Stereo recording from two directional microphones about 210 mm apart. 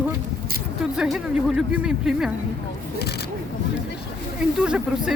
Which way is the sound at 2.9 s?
50° left (ahead or behind).